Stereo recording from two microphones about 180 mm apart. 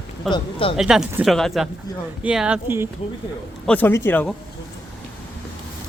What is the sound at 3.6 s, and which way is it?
Speech, 10° left (ahead or behind).